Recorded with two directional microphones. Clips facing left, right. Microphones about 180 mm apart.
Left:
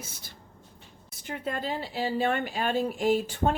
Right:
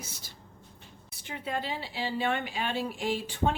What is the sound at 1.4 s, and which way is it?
Speech, 45° left (ahead or behind).